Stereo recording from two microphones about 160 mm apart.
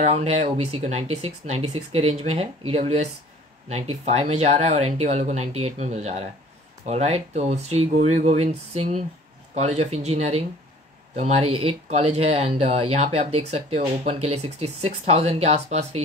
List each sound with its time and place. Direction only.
0.0 s speech: 40° right (ahead or behind)